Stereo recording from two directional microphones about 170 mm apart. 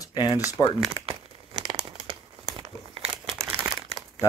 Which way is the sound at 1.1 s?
30° right (ahead or behind).